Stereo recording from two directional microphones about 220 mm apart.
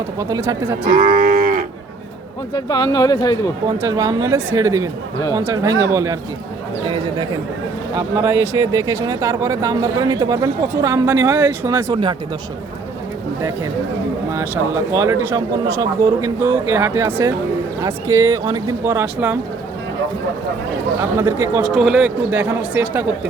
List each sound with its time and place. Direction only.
0.2 s speech: 15° right (ahead or behind)
0.9 s cattle: 40° right (ahead or behind)
2.5 s speech: 15° left (ahead or behind)
3.7 s speech: 15° right (ahead or behind)
14.3 s speech: 10° right (ahead or behind)
21.2 s speech: 10° right (ahead or behind)